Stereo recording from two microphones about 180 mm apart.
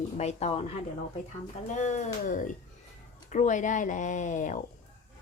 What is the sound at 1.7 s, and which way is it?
Speech, 40° left (ahead or behind).